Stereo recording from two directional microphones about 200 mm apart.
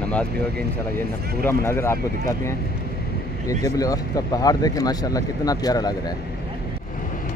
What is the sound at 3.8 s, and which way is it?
Speech, 20° left (ahead or behind).